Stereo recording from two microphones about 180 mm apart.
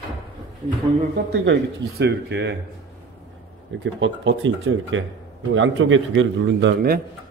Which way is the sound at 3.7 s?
90° right.